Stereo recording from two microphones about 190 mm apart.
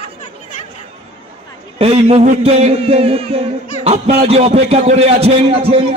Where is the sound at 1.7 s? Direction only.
30° right (ahead or behind).